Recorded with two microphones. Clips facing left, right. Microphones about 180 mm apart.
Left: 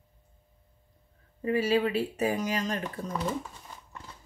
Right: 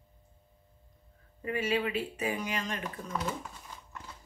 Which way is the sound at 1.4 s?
35° left (ahead or behind).